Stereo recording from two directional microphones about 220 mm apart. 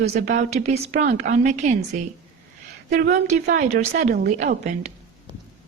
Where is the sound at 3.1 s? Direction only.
35° right (ahead or behind).